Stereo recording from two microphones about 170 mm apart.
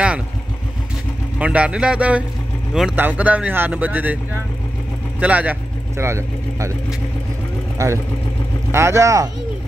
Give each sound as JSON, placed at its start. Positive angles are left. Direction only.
{"t": 1.4, "sound": "speech", "side_deg": -5}
{"t": 5.2, "sound": "speech", "side_deg": -10}
{"t": 7.7, "sound": "speech", "side_deg": -15}